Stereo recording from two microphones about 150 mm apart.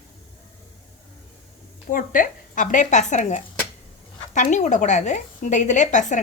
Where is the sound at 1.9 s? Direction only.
60° left (ahead or behind).